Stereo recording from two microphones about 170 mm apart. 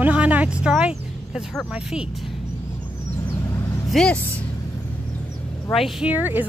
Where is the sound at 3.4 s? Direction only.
20° left (ahead or behind).